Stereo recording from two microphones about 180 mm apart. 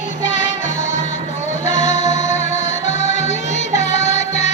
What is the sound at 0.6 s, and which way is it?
Music, 40° left (ahead or behind).